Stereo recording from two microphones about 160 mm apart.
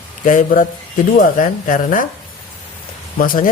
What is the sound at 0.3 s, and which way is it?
Speech, 55° left (ahead or behind).